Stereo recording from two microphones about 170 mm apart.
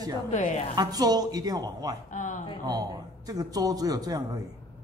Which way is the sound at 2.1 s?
45° left (ahead or behind).